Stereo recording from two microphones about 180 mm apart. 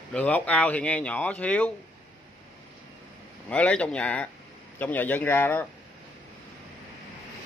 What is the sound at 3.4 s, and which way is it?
Speech, 5° left (ahead or behind).